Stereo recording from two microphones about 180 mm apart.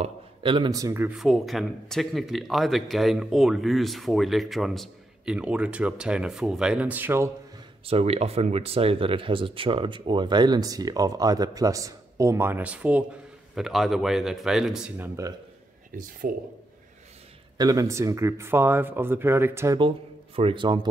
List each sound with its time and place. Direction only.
0.0 s a man's voice: 30° right (ahead or behind)
1.1 s speech: centre (ahead or behind)
7.8 s speech: 35° right (ahead or behind); by 15.0 s 5° right (ahead or behind)
15.9 s speech: 50° right (ahead or behind)
17.6 s speech: 20° right (ahead or behind)
20.3 s speech: 30° right (ahead or behind)